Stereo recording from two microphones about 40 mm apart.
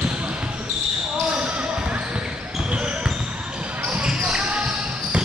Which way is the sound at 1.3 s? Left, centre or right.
Right.